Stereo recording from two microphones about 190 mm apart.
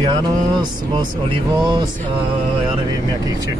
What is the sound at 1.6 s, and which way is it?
Vehicle, 25° right (ahead or behind).